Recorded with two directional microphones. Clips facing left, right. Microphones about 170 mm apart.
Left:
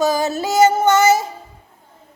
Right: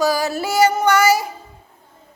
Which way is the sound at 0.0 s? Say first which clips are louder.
Left 1 dB; 25° left (ahead or behind).